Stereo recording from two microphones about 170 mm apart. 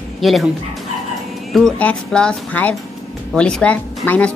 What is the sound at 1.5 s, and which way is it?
Speech, 5° left (ahead or behind).